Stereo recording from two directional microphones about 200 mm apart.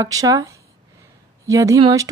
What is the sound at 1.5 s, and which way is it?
Speech, 15° right (ahead or behind).